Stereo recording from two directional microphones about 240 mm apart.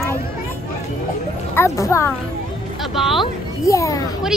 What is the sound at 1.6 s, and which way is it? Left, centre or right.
Speech, centre.